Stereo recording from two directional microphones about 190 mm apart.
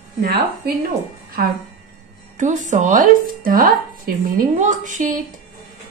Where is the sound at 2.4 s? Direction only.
40° right (ahead or behind).